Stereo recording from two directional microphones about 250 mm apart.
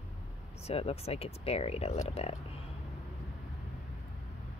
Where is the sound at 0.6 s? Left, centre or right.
Left.